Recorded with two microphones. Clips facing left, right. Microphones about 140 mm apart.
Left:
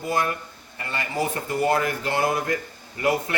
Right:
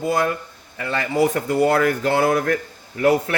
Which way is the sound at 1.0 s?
85° right.